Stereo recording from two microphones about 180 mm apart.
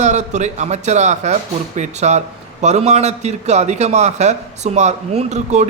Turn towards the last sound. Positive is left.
turn(degrees=-40)  # may be behind; listen again after turning